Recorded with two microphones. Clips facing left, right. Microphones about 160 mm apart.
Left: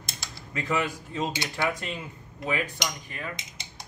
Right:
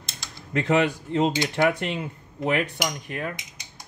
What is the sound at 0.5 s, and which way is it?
Speech, 70° right (ahead or behind).